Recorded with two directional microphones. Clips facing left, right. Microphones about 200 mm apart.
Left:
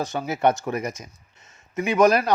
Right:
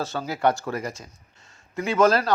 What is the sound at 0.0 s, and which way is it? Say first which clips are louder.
A man's voice: left 2 dB; 15° left (ahead or behind).